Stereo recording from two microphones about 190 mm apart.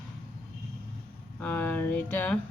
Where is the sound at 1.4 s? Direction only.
10° left (ahead or behind).